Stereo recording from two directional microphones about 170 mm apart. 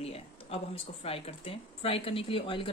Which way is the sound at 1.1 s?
35° left (ahead or behind).